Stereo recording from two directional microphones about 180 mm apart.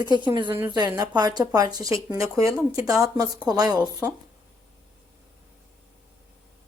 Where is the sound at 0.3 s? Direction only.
25° right (ahead or behind).